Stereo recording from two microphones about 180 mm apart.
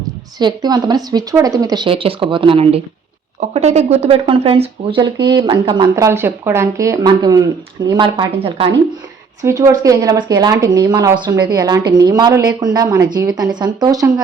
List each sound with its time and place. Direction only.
0.3 s speech: 25° right (ahead or behind)
6.1 s speech: 15° right (ahead or behind); by 8.7 s 30° right (ahead or behind)
9.4 s speech: 15° right (ahead or behind)